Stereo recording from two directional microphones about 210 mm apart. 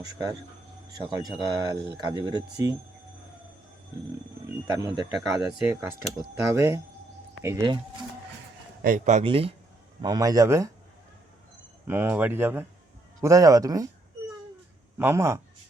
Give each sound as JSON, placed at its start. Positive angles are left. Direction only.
{"t": 1.2, "sound": "speech", "side_deg": -20}
{"t": 4.6, "sound": "speech", "side_deg": -15}
{"t": 8.8, "sound": "speech", "side_deg": -40}
{"t": 11.9, "sound": "speech", "side_deg": -10}
{"t": 14.9, "sound": "speech", "side_deg": -10}